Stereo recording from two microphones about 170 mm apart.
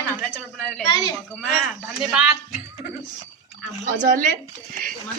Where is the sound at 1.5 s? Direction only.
Centre (ahead or behind).